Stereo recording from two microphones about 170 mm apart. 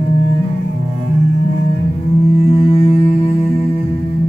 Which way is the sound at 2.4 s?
35° left (ahead or behind).